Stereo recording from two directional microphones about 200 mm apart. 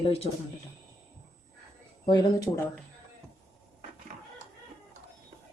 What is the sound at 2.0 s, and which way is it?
Speech, 20° left (ahead or behind).